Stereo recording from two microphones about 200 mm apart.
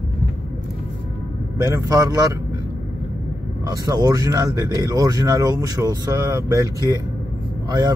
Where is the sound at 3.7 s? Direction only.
20° right (ahead or behind).